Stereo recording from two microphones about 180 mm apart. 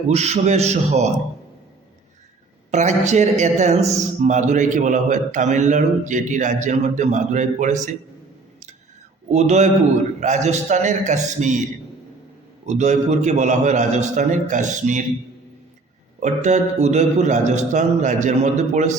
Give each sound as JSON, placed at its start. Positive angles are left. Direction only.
{"t": 0.1, "sound": "a man's voice", "side_deg": -35}
{"t": 2.7, "sound": "a man's voice", "side_deg": -40}
{"t": 9.3, "sound": "a man's voice", "side_deg": -40}
{"t": 12.6, "sound": "a man's voice", "side_deg": -40}
{"t": 16.2, "sound": "a man's voice", "side_deg": -40}